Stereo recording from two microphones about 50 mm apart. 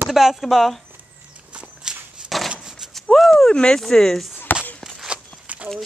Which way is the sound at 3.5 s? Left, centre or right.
Centre.